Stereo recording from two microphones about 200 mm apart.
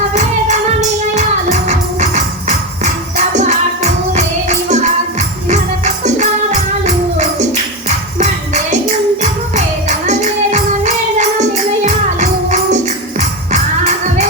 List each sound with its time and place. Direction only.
0.1 s music: 35° right (ahead or behind)
4.1 s music: 35° right (ahead or behind)
10.1 s music: 35° right (ahead or behind)